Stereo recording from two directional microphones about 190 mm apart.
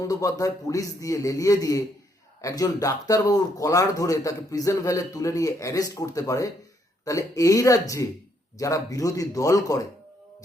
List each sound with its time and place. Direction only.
0.0 s speech: 15° left (ahead or behind)